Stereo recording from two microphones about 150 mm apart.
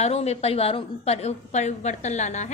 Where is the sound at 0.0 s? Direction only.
45° left (ahead or behind).